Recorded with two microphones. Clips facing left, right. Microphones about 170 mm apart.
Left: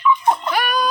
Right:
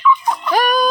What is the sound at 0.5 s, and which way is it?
Music, 40° right (ahead or behind).